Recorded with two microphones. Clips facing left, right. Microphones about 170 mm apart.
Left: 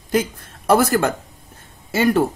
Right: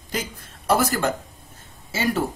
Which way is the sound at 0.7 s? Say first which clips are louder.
Left 5 dB; 55° left (ahead or behind).